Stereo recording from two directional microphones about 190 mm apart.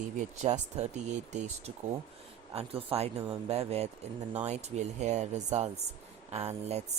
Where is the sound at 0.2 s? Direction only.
35° right (ahead or behind).